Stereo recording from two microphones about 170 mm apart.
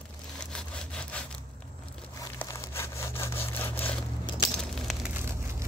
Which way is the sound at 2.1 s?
15° left (ahead or behind).